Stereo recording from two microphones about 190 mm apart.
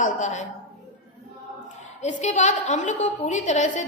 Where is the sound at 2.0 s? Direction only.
40° left (ahead or behind).